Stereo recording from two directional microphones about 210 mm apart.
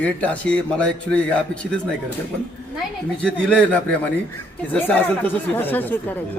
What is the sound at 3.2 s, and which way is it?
A man's voice, 5° left (ahead or behind).